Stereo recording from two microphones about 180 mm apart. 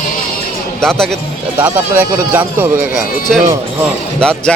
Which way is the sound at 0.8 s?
5° left (ahead or behind).